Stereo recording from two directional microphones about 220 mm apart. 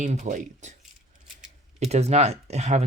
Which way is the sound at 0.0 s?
35° right (ahead or behind).